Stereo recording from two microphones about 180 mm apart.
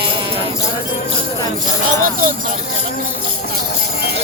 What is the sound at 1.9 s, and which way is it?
Speech, 50° right (ahead or behind).